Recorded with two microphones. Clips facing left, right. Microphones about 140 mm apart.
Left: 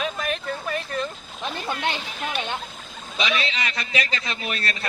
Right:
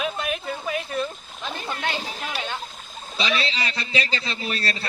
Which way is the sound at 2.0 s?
35° right (ahead or behind).